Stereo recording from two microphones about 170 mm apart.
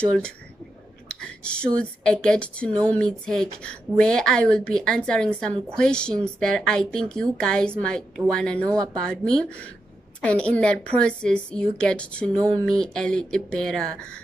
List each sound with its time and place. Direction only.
1.0 s whispering: 5° left (ahead or behind)
1.8 s a woman's voice: 5° left (ahead or behind)
8.6 s speech: 20° right (ahead or behind)
8.9 s a woman's voice: 5° left (ahead or behind)